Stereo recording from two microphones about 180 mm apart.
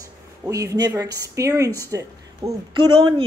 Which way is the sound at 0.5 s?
20° right (ahead or behind).